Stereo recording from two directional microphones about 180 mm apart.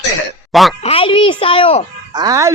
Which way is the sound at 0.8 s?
30° left (ahead or behind).